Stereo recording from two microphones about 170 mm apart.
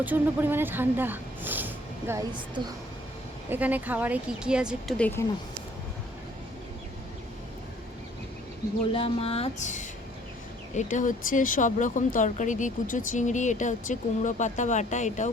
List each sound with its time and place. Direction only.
0.0 s speech: 10° right (ahead or behind)
3.5 s speech: 10° right (ahead or behind)
4.9 s speech: 10° left (ahead or behind)
8.9 s speech: 30° left (ahead or behind)